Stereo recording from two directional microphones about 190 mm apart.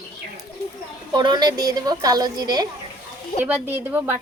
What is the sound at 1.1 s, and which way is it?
Speech, 20° right (ahead or behind).